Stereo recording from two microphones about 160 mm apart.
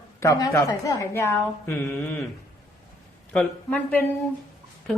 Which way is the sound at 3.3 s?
10° left (ahead or behind).